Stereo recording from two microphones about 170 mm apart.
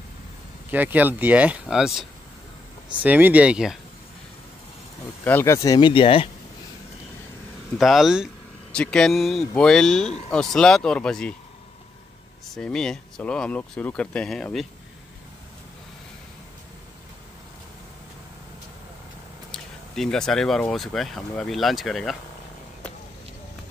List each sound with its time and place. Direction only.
0.7 s speech: 10° right (ahead or behind)
5.2 s speech: 15° left (ahead or behind); by 6.2 s 30° left (ahead or behind)
7.7 s speech: centre (ahead or behind)
12.4 s speech: 5° left (ahead or behind)
19.5 s speech: 5° left (ahead or behind)